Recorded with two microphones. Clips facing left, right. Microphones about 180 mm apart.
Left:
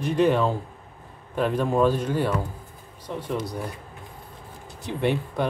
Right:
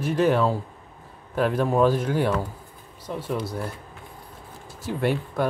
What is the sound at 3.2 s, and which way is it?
Speech, 15° left (ahead or behind).